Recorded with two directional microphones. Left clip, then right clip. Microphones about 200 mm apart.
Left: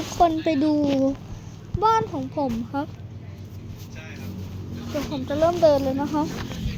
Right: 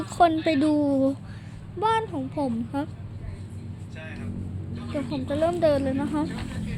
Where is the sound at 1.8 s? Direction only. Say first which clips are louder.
Left 4 dB; 25° left (ahead or behind).